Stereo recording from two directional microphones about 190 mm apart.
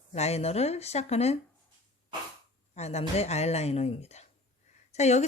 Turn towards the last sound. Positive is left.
turn(degrees=35)  # may be behind; listen again after turning